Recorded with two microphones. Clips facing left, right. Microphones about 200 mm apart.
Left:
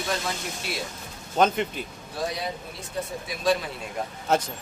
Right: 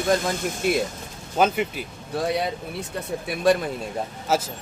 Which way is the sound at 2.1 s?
60° right (ahead or behind).